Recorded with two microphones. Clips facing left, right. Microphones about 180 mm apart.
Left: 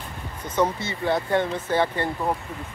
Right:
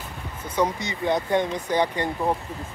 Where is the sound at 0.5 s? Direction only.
10° right (ahead or behind).